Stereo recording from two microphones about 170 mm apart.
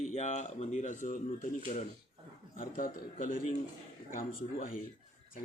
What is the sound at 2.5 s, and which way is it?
Speech, 55° left (ahead or behind).